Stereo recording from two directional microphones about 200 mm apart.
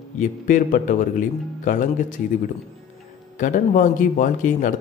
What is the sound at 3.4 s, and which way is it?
Speech, 40° left (ahead or behind).